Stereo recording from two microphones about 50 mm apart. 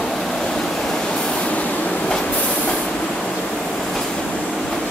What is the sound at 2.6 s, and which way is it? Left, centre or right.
Vehicle, centre.